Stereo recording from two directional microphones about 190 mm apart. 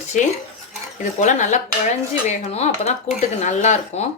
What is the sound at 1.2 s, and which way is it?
Speech, 40° left (ahead or behind).